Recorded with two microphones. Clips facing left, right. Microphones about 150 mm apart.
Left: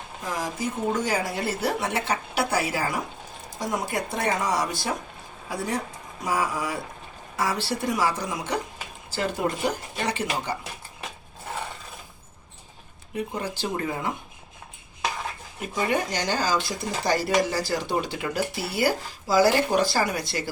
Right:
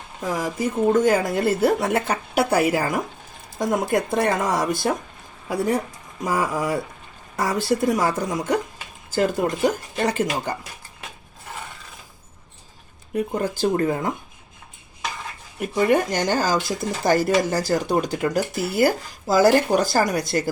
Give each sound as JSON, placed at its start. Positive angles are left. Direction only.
{"t": 0.3, "sound": "speech", "side_deg": -55}
{"t": 13.1, "sound": "speech", "side_deg": -45}
{"t": 15.9, "sound": "speech", "side_deg": -50}